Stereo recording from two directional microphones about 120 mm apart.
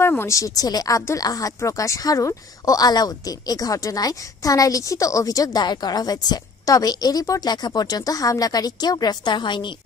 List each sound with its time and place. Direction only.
0.0 s speech: 20° left (ahead or behind); by 9.7 s 40° left (ahead or behind)